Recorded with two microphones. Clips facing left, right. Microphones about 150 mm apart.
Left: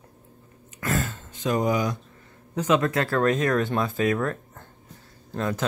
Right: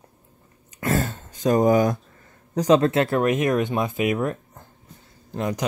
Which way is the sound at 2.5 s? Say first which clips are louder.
Right 5 dB; 35° right (ahead or behind).